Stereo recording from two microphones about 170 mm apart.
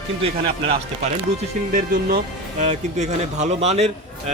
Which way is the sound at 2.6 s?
40° right (ahead or behind).